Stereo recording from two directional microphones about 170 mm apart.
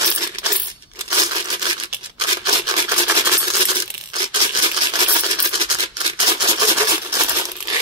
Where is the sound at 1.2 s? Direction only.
25° right (ahead or behind).